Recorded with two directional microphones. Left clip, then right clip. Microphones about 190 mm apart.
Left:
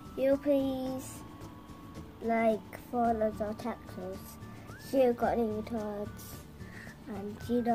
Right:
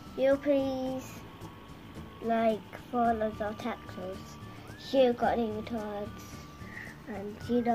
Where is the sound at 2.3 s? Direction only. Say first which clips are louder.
Right 1 dB; 35° left (ahead or behind).